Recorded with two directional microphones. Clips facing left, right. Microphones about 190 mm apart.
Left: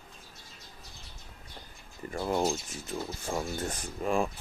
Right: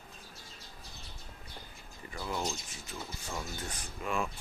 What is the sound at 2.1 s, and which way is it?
Speech, 50° left (ahead or behind).